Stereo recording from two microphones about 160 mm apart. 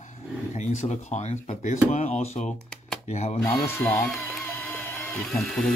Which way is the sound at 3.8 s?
10° left (ahead or behind).